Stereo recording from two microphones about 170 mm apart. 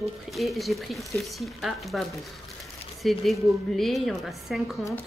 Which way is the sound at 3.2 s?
Centre (ahead or behind).